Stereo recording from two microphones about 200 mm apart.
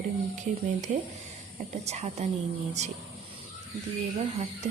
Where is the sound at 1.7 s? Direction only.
35° right (ahead or behind).